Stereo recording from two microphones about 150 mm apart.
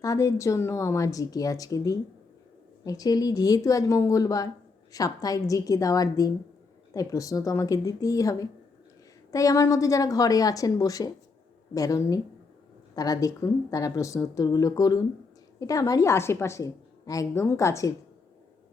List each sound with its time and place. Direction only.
0.0 s speech: 20° left (ahead or behind)